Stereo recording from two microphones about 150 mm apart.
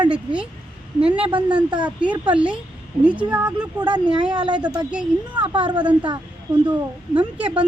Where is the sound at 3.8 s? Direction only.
30° right (ahead or behind).